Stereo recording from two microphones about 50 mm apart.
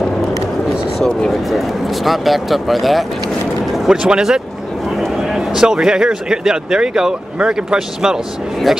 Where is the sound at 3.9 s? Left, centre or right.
Centre.